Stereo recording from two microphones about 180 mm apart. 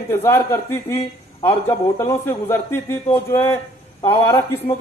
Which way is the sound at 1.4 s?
30° left (ahead or behind).